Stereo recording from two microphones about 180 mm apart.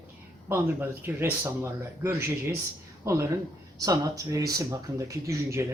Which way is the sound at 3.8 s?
20° right (ahead or behind).